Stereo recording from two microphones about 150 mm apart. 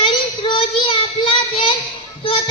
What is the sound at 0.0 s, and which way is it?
Child singing, 35° left (ahead or behind).